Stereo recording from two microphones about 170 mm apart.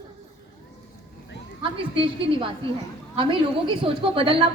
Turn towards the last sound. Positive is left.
turn(degrees=-30)  # may be behind; listen again after turning